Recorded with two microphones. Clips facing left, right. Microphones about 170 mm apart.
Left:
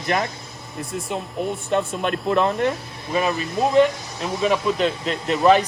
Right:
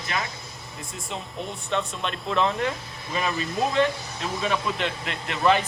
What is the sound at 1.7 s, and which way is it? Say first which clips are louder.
Speech: left 5 dB; 45° left (ahead or behind).